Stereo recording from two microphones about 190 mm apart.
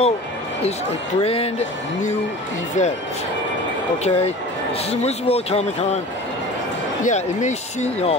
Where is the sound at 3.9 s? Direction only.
35° left (ahead or behind).